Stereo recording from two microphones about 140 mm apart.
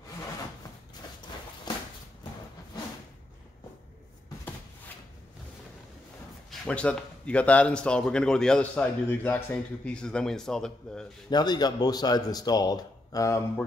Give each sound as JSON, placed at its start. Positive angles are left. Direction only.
{"t": 1.7, "sound": "a sound", "side_deg": 30}
{"t": 6.5, "sound": "a man's voice", "side_deg": 5}
{"t": 11.2, "sound": "speech", "side_deg": 30}